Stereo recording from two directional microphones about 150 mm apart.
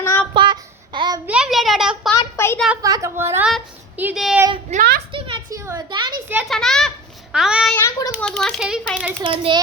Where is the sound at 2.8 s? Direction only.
20° right (ahead or behind); by 4.3 s 5° right (ahead or behind).